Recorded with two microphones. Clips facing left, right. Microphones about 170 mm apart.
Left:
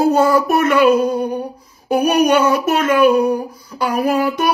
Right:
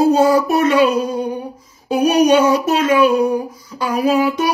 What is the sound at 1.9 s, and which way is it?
Music, 55° left (ahead or behind).